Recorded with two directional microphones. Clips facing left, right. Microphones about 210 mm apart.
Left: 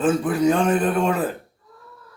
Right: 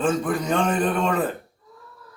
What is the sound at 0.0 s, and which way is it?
Speech, 5° left (ahead or behind).